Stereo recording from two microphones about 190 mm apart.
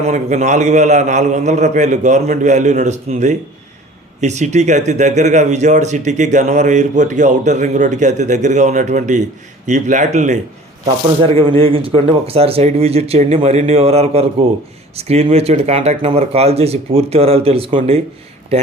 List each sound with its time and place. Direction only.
0.0 s speech: 40° right (ahead or behind)